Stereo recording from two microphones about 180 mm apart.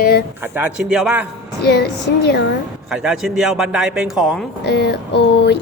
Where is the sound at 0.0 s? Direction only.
60° left (ahead or behind).